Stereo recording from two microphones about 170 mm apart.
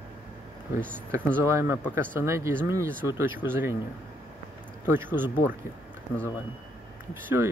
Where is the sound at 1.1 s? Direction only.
15° right (ahead or behind).